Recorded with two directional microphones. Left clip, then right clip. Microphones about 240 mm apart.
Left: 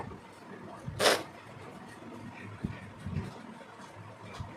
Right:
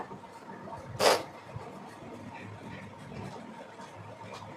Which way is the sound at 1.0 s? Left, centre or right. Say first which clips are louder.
Right 2 dB; centre.